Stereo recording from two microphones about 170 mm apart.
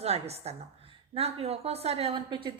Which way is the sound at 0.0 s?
40° right (ahead or behind).